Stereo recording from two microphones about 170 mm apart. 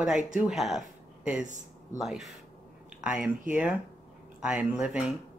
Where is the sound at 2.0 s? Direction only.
Centre (ahead or behind).